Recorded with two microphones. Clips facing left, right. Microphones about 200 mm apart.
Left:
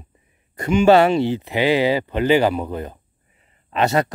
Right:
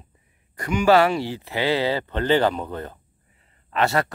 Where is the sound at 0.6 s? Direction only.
25° left (ahead or behind).